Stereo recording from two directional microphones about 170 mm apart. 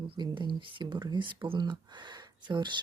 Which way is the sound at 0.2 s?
30° right (ahead or behind).